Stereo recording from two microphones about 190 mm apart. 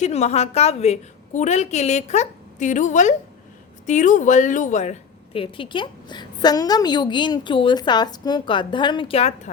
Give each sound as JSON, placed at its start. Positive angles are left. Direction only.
{"t": 0.0, "sound": "a woman's voice", "side_deg": 35}